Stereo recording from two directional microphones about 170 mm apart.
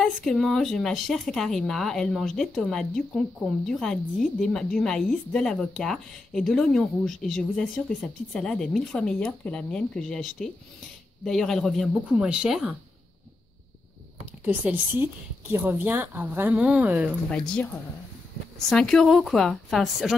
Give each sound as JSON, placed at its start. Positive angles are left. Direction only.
{"t": 0.0, "sound": "speech", "side_deg": 0}
{"t": 14.4, "sound": "speech", "side_deg": -10}
{"t": 18.7, "sound": "speech", "side_deg": 5}